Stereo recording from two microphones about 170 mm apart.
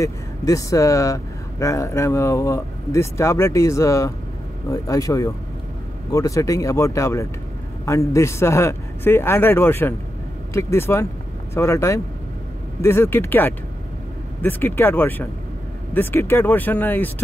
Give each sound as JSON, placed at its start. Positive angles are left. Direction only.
{"t": 0.0, "sound": "speech", "side_deg": 20}